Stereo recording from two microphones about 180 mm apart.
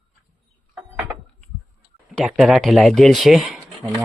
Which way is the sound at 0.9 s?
Centre (ahead or behind).